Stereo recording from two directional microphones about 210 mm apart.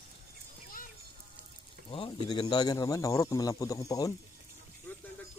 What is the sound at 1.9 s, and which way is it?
Speech, 25° left (ahead or behind).